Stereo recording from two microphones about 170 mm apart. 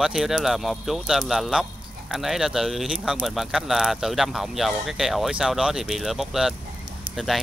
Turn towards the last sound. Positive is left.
turn(degrees=0)  # may be behind; listen again after turning